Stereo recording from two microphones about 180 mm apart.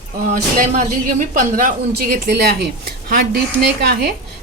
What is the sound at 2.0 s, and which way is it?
Speech, 60° right (ahead or behind).